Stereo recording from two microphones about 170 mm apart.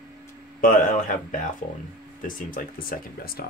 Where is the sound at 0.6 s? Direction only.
50° left (ahead or behind).